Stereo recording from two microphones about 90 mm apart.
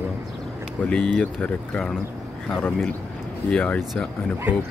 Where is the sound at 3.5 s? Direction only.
15° left (ahead or behind).